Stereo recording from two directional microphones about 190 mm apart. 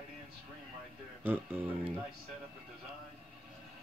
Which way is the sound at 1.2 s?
10° right (ahead or behind).